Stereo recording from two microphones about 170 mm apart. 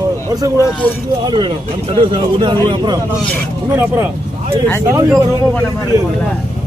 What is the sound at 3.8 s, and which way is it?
A man's voice, 15° right (ahead or behind).